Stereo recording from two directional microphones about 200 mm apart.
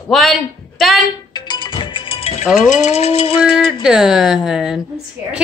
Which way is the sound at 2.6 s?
35° left (ahead or behind).